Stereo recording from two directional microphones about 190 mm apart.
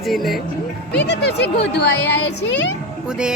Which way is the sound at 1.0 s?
65° left (ahead or behind).